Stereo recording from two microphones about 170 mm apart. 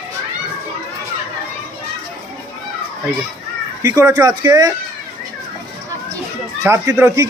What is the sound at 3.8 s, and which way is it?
Speech, 20° right (ahead or behind).